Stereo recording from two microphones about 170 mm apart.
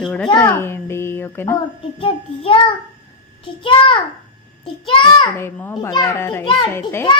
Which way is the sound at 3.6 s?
30° left (ahead or behind).